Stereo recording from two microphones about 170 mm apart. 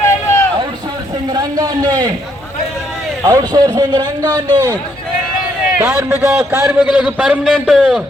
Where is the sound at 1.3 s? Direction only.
20° right (ahead or behind).